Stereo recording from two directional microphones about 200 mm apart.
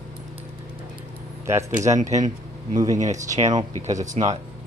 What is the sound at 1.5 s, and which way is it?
Speech, 15° right (ahead or behind).